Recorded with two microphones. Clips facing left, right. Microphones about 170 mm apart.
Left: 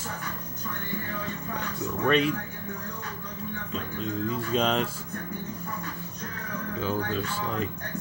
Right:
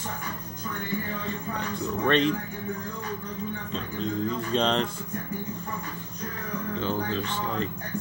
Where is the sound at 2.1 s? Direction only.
5° left (ahead or behind).